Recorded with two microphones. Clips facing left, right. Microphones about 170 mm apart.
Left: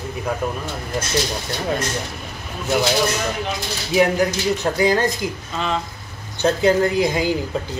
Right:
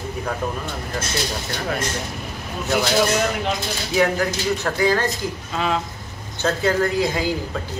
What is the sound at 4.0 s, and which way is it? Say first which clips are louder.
Speech: left 3 dB; 20° left (ahead or behind).